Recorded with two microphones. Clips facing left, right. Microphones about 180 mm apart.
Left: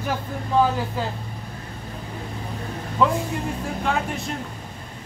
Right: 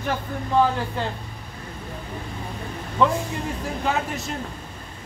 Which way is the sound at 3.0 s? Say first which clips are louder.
Even; 5° left (ahead or behind).